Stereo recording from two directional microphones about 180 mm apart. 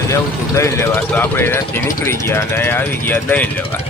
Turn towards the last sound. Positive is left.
turn(degrees=10)  # may be behind; listen again after turning